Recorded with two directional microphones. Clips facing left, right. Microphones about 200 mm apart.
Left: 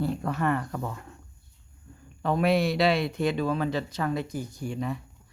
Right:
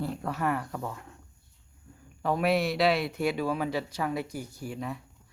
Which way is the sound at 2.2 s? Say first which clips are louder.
Left 2 dB; 5° right (ahead or behind).